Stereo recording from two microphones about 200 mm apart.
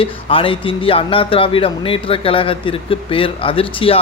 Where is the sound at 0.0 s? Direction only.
25° left (ahead or behind).